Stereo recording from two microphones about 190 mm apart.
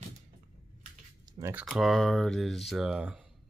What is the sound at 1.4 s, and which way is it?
Speech, 15° right (ahead or behind).